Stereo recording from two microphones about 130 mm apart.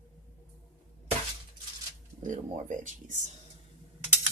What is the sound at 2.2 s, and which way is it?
Speech, 80° right.